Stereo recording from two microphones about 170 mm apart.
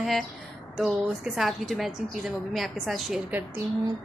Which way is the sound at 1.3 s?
Centre (ahead or behind).